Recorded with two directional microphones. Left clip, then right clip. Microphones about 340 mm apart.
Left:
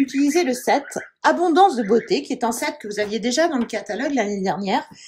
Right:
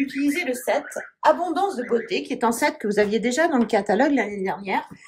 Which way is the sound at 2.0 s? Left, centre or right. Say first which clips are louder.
Left 1 dB; centre.